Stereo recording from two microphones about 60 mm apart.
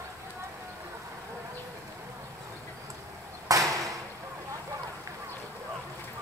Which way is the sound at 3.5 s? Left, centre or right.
Right.